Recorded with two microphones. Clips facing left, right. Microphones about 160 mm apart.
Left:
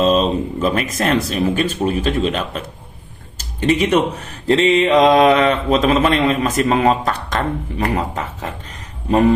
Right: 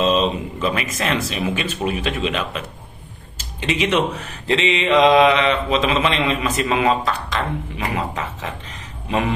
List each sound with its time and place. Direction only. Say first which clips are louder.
0.0 s speech: left 3 dB; 40° left (ahead or behind)
4.5 s a man's voice: left 5 dB; 40° left (ahead or behind)